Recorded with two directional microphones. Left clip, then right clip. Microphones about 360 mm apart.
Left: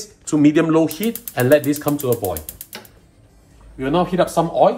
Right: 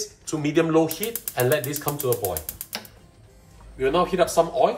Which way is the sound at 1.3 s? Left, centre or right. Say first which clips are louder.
Left 8 dB; left.